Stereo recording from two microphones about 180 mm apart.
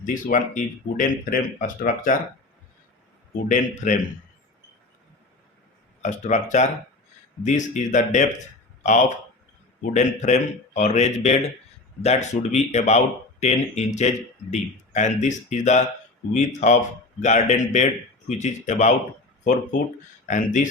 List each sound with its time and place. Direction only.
0.0 s speech: 45° left (ahead or behind)
3.8 s speech: 45° left (ahead or behind)
6.0 s a man's voice: 40° left (ahead or behind)
20.2 s speech: 45° left (ahead or behind)